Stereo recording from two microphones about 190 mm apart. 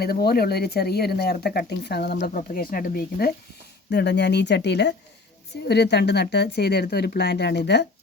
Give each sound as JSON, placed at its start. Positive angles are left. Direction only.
{"t": 0.0, "sound": "speech", "side_deg": 55}
{"t": 2.2, "sound": "speech", "side_deg": 50}
{"t": 3.8, "sound": "speech", "side_deg": 60}